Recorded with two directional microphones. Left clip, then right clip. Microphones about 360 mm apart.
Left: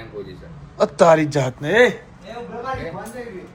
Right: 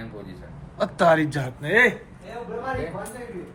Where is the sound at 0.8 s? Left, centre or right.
Centre.